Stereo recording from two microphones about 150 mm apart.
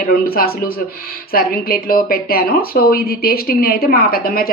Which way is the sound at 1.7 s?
85° left.